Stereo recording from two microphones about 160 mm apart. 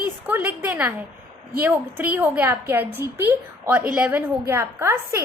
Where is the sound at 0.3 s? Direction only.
10° right (ahead or behind).